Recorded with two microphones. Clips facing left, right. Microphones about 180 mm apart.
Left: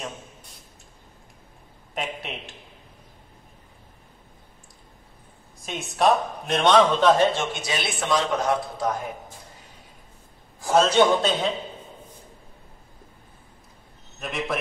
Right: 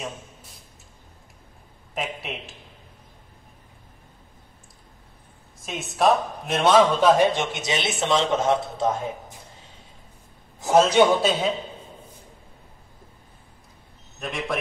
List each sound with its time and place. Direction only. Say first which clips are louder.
2.0 s speech: right 1 dB; centre (ahead or behind)
5.6 s speech: even; centre (ahead or behind); by 9.0 s 25° right (ahead or behind)
10.8 s speech: right 1 dB; 10° right (ahead or behind)
14.2 s a man's voice: even; centre (ahead or behind)